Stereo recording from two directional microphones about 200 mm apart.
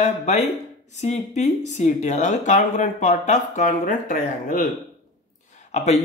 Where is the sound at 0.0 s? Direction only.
35° left (ahead or behind).